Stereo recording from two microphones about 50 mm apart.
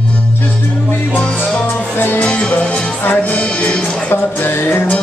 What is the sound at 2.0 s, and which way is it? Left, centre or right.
Music, left.